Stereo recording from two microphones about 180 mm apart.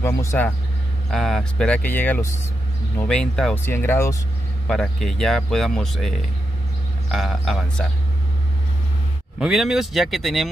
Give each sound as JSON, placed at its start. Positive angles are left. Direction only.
{"t": 0.0, "sound": "speech", "side_deg": 15}
{"t": 1.1, "sound": "speech", "side_deg": 0}
{"t": 4.6, "sound": "speech", "side_deg": 5}
{"t": 9.4, "sound": "speech", "side_deg": 0}